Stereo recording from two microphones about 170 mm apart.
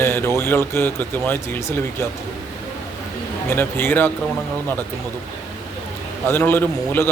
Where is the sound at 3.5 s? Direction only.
15° left (ahead or behind).